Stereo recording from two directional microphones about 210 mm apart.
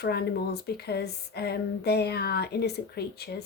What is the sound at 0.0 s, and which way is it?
A woman's voice, 50° left (ahead or behind).